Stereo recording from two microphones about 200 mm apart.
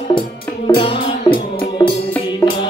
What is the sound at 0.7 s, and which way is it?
Music, 30° left (ahead or behind).